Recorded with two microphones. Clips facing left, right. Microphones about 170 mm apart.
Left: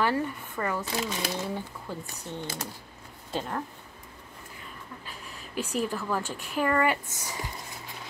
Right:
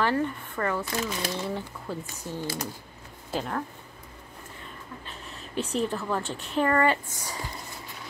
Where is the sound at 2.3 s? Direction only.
10° right (ahead or behind).